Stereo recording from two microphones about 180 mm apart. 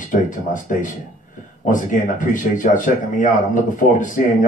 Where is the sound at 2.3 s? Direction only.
45° left (ahead or behind).